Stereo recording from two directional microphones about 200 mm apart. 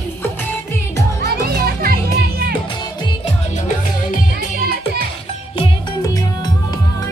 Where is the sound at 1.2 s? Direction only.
50° right (ahead or behind).